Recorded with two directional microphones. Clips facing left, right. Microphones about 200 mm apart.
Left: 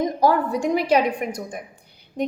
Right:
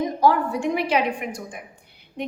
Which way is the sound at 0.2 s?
40° left (ahead or behind).